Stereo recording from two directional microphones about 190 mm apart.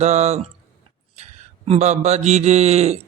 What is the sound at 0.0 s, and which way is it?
Speech, 35° right (ahead or behind).